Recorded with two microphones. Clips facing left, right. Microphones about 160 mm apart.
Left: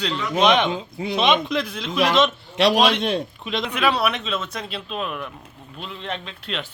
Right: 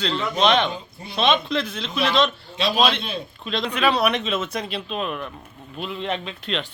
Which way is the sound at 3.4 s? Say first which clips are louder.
Even; 15° left (ahead or behind).